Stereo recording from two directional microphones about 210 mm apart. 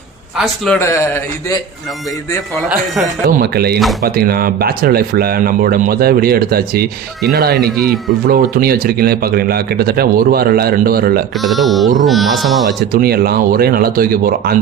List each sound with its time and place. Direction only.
0.3 s a man's voice: centre (ahead or behind)
0.8 s speech: 15° left (ahead or behind)
2.6 s speech: centre (ahead or behind)
3.2 s a man's voice: 50° right (ahead or behind)
11.3 s speech: centre (ahead or behind)
12.9 s a man's voice: 45° right (ahead or behind)